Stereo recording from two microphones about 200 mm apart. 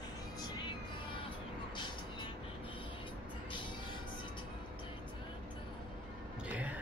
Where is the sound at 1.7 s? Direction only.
25° left (ahead or behind).